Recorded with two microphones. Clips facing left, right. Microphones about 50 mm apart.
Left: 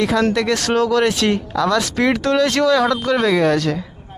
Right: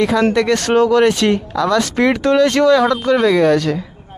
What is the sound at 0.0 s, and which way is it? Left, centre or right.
Speech, centre.